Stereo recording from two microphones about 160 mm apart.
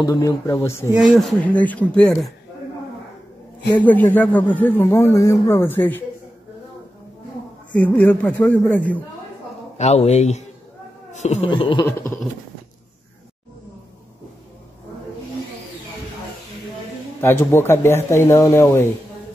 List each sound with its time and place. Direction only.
0.0 s speech: 20° left (ahead or behind)
0.9 s speech: centre (ahead or behind)
3.7 s speech: 10° left (ahead or behind)
7.7 s speech: 10° left (ahead or behind)
9.8 s speech: 45° left (ahead or behind)
11.1 s a sound: 45° left (ahead or behind)
11.4 s a sound: 35° left (ahead or behind)
11.8 s speech: 15° left (ahead or behind)
17.2 s speech: 15° left (ahead or behind)